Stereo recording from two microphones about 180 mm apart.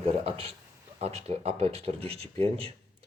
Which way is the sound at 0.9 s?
35° right (ahead or behind).